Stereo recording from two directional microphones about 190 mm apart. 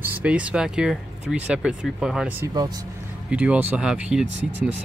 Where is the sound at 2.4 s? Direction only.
20° right (ahead or behind).